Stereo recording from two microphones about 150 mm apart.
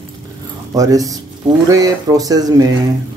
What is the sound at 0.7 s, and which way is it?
Speech, 25° right (ahead or behind).